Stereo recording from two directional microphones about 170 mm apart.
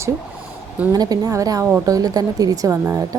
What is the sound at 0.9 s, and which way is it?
A woman's voice, 20° right (ahead or behind).